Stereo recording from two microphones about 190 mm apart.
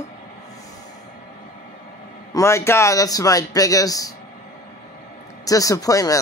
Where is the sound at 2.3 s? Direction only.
15° left (ahead or behind).